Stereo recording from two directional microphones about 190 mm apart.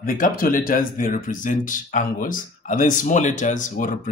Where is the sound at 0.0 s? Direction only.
45° left (ahead or behind).